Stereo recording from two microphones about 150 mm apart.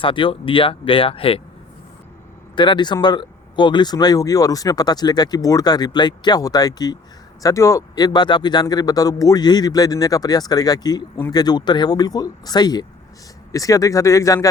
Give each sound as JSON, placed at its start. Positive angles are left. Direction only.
{"t": 0.0, "sound": "speech", "side_deg": 35}
{"t": 2.6, "sound": "speech", "side_deg": 30}